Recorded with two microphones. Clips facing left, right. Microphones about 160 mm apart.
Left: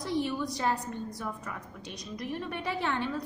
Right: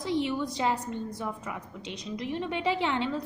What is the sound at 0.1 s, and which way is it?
A woman's voice, 20° right (ahead or behind).